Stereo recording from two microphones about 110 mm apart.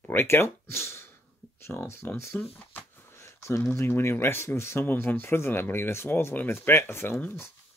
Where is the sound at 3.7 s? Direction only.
25° left (ahead or behind).